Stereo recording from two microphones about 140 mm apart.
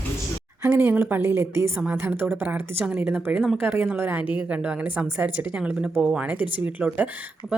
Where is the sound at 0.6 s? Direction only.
15° right (ahead or behind).